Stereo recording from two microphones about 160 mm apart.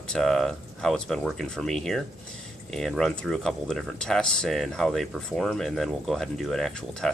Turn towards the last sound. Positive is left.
turn(degrees=5)  # may be behind; listen again after turning